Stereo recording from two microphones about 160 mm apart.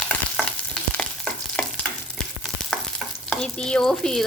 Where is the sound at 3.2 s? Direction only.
5° left (ahead or behind).